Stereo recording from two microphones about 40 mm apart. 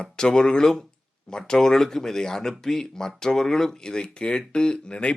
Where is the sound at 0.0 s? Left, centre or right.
Centre.